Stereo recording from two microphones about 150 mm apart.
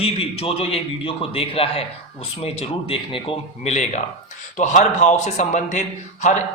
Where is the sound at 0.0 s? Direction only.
40° left (ahead or behind).